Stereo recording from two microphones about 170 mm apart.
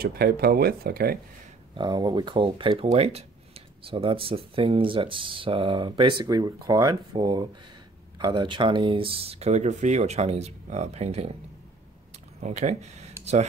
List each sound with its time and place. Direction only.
0.0 s speech: 65° right (ahead or behind)
1.8 s speech: 25° right (ahead or behind)
12.4 s speech: 40° right (ahead or behind)